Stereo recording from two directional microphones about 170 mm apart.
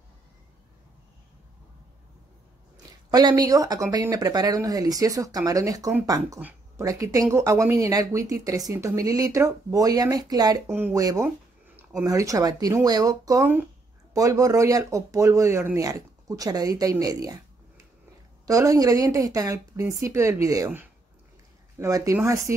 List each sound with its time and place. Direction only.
3.1 s speech: 25° right (ahead or behind)
18.4 s speech: 20° right (ahead or behind)